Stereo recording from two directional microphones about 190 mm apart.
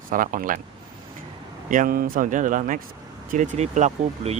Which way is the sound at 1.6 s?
45° right (ahead or behind).